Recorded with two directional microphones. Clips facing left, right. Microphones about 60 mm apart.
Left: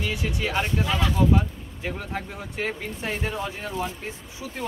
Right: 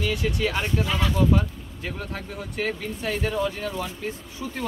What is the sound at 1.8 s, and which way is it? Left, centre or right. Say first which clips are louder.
Speech: left 2 dB; centre.